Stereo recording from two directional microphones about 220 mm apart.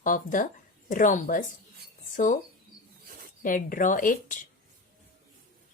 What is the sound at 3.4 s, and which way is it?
Speech, 40° left (ahead or behind).